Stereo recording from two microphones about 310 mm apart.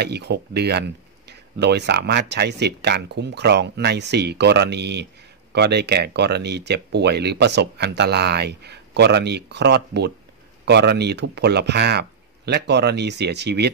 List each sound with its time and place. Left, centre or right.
0.0 s speech: right